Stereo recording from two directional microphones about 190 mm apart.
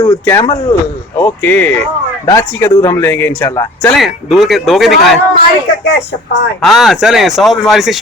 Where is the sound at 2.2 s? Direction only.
20° left (ahead or behind).